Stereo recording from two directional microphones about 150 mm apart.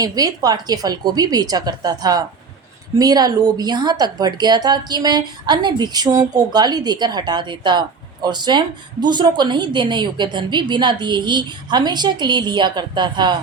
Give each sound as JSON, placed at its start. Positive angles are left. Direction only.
{"t": 0.0, "sound": "a woman's voice", "side_deg": -25}